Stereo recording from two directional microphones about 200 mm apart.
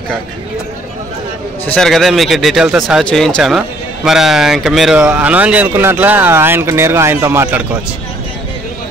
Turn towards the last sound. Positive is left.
turn(degrees=-10)  # may be behind; listen again after turning